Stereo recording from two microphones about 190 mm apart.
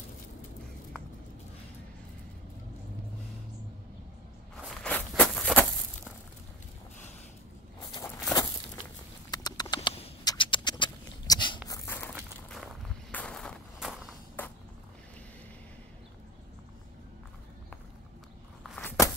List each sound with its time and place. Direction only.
4.6 s walk: 5° left (ahead or behind)
7.9 s a sound: 20° left (ahead or behind)
9.3 s bird: 20° left (ahead or behind)
9.8 s a sound: 30° left (ahead or behind)
10.2 s patter: 25° left (ahead or behind)
12.4 s walk: centre (ahead or behind)
18.6 s walk: 10° left (ahead or behind)